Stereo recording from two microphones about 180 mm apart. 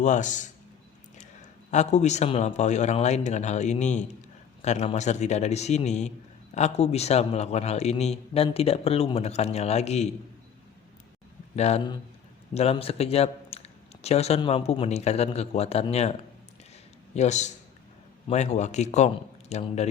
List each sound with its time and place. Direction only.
0.0 s a man's voice: 45° left (ahead or behind)
1.7 s a man's voice: 40° left (ahead or behind)
11.5 s a man's voice: 35° left (ahead or behind)
17.2 s a man's voice: 40° left (ahead or behind)